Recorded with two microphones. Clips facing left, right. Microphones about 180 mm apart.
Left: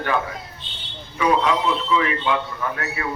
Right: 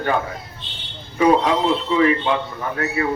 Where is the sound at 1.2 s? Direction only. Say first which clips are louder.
Right 4 dB; 40° right (ahead or behind).